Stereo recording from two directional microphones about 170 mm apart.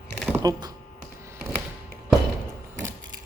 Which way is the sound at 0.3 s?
20° right (ahead or behind).